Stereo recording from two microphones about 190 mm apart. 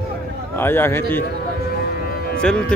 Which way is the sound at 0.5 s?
10° left (ahead or behind).